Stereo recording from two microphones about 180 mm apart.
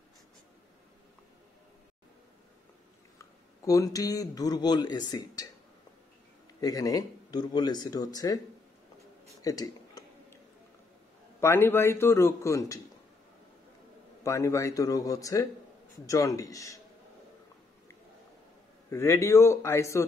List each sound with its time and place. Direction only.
3.2 s speech: 20° left (ahead or behind)
6.6 s speech: 20° left (ahead or behind)
9.4 s a sound: 20° left (ahead or behind)
11.4 s a man's voice: 15° left (ahead or behind)
14.2 s a man's voice: 15° left (ahead or behind)
18.9 s a man's voice: 15° left (ahead or behind)